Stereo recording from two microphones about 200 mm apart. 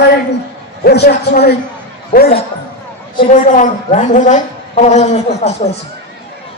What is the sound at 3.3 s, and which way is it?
A woman's voice, 40° left (ahead or behind).